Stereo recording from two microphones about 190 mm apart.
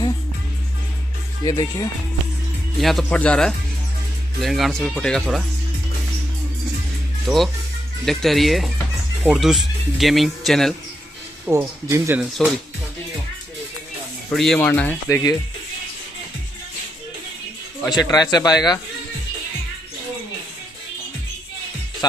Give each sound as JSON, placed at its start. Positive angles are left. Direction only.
{"t": 1.4, "sound": "speech", "side_deg": 20}
{"t": 2.8, "sound": "speech", "side_deg": 0}
{"t": 7.2, "sound": "speech", "side_deg": 0}
{"t": 11.4, "sound": "speech", "side_deg": -10}
{"t": 14.3, "sound": "speech", "side_deg": 0}
{"t": 17.8, "sound": "speech", "side_deg": 20}